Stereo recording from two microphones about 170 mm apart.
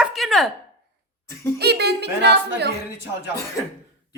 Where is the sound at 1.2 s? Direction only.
15° left (ahead or behind).